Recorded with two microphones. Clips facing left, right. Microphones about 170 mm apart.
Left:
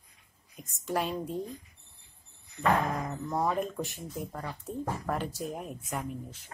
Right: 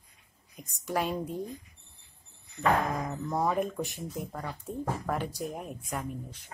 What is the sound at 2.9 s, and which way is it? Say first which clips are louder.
Speech: right 1 dB; centre (ahead or behind).